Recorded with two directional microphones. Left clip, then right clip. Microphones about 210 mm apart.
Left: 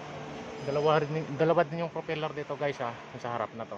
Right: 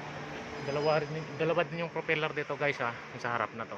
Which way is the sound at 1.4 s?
25° left (ahead or behind).